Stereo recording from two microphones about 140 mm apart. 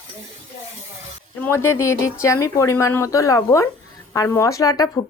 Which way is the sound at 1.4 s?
15° left (ahead or behind).